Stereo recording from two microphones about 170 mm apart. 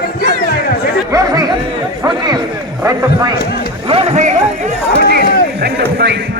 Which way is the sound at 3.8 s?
35° right (ahead or behind).